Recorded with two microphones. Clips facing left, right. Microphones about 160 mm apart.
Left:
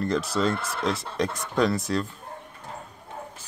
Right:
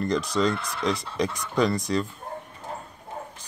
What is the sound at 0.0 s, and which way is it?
Speech, 5° left (ahead or behind).